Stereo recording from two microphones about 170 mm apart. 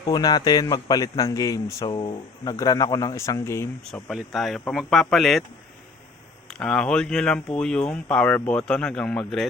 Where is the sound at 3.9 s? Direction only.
Centre (ahead or behind).